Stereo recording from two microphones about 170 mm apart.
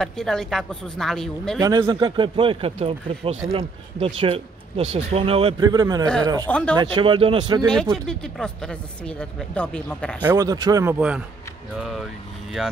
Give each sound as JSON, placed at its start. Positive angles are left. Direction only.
{"t": 0.0, "sound": "speech", "side_deg": 5}
{"t": 1.6, "sound": "speech", "side_deg": -20}
{"t": 5.6, "sound": "speech", "side_deg": -25}
{"t": 6.4, "sound": "speech", "side_deg": 5}
{"t": 6.8, "sound": "speech", "side_deg": -25}
{"t": 7.6, "sound": "speech", "side_deg": 5}
{"t": 10.2, "sound": "speech", "side_deg": -20}